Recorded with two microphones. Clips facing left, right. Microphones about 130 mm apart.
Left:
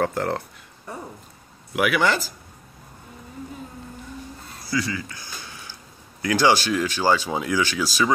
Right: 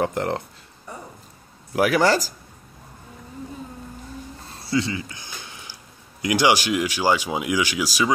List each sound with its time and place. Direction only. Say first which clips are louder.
0.0 s speech: even; 20° right (ahead or behind)
1.7 s speech: right 3 dB; 35° right (ahead or behind)
4.6 s a sound: right 2 dB; 25° right (ahead or behind)
6.2 s speech: even; 15° right (ahead or behind)